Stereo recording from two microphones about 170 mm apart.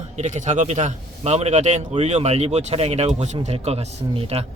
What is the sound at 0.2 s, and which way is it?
Speech, 45° right (ahead or behind).